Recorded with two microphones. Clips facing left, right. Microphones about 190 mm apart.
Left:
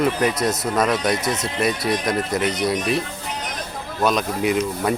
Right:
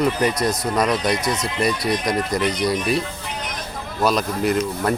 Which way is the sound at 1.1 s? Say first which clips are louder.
Even; 25° left (ahead or behind).